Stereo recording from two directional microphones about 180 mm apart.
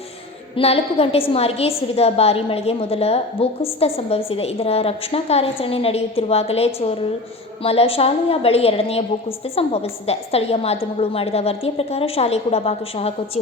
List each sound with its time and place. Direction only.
0.5 s a woman's voice: 35° left (ahead or behind)